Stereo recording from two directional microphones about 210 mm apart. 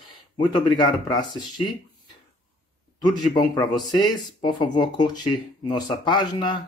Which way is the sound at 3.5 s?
20° left (ahead or behind).